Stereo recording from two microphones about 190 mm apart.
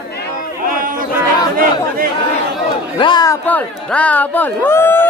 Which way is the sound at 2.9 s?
25° left (ahead or behind).